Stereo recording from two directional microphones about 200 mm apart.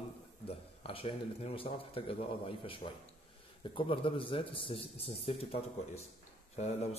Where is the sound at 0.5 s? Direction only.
30° left (ahead or behind).